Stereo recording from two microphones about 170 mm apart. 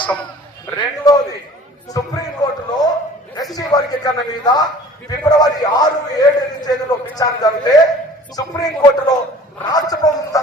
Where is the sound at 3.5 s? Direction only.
20° left (ahead or behind).